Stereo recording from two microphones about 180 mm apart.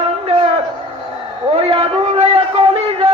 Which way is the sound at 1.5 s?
35° right (ahead or behind).